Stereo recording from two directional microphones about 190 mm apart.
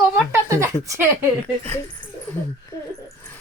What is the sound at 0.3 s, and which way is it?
Speech, 15° right (ahead or behind).